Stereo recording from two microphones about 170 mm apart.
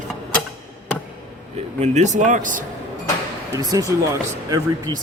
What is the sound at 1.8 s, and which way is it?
Speech, 45° right (ahead or behind).